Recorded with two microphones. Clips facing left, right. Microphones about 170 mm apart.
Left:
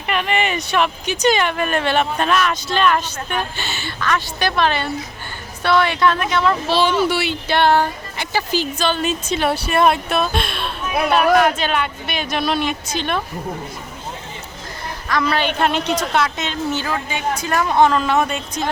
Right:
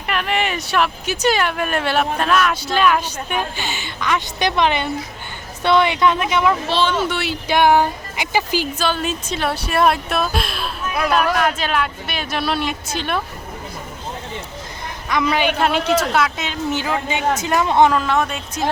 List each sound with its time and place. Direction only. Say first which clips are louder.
0.1 s speech: left 1 dB; centre (ahead or behind)
6.7 s speech: left 2 dB; 10° left (ahead or behind)
7.4 s speech: right 2 dB; 15° right (ahead or behind)
15.1 s speech: right 1 dB; 15° right (ahead or behind)
15.6 s speech: right 2 dB; 5° right (ahead or behind); by 17.9 s 20° right (ahead or behind)
17.9 s speech: left 1 dB; centre (ahead or behind)